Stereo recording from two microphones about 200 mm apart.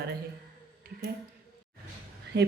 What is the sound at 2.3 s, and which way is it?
Speech, 55° right (ahead or behind).